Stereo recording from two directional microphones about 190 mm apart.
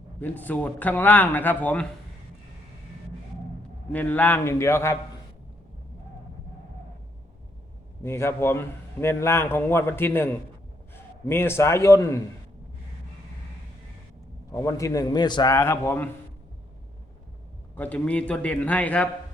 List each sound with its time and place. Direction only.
0.2 s a man's voice: 10° left (ahead or behind)
3.9 s a man's voice: 10° left (ahead or behind)
8.0 s a man's voice: 15° left (ahead or behind)
14.5 s a man's voice: 20° left (ahead or behind)
17.7 s a man's voice: 5° left (ahead or behind)